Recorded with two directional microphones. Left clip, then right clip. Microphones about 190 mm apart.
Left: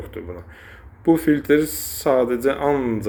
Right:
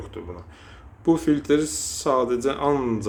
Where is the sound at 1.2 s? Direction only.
Centre (ahead or behind).